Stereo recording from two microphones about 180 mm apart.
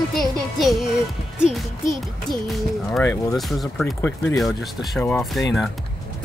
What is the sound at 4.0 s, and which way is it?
Speech, 15° left (ahead or behind).